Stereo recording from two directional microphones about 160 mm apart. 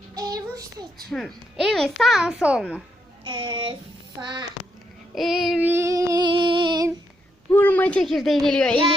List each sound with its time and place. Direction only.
0.1 s child singing: 25° right (ahead or behind)
1.1 s a child's voice: centre (ahead or behind)
3.2 s a child's voice: 30° right (ahead or behind)
5.1 s a child's voice: centre (ahead or behind)
5.6 s female singing: 15° right (ahead or behind)
7.5 s speech: 10° left (ahead or behind)